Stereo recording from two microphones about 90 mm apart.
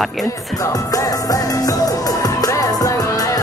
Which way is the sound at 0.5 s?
40° left (ahead or behind).